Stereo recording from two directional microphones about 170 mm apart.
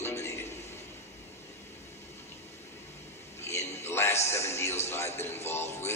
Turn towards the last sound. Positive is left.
turn(degrees=15)  # may be behind; listen again after turning